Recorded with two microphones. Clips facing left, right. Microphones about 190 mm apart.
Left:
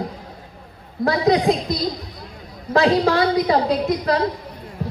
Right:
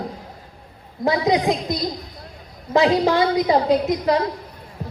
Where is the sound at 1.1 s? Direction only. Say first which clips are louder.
Left 2 dB; 20° right (ahead or behind).